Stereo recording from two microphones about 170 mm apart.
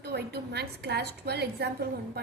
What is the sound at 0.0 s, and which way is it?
A woman's voice, 75° right (ahead or behind).